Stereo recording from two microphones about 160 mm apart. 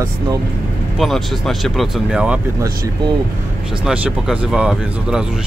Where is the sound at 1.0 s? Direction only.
Centre (ahead or behind).